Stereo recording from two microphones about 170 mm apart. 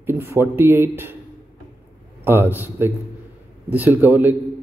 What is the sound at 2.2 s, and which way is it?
Speech, 15° right (ahead or behind).